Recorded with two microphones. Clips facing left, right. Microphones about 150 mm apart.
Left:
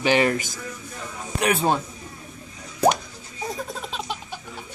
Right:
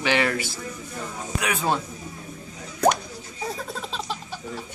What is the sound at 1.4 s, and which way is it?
Speech, 30° left (ahead or behind).